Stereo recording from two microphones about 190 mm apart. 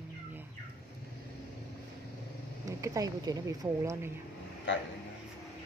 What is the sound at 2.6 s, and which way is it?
A woman's voice, 15° right (ahead or behind).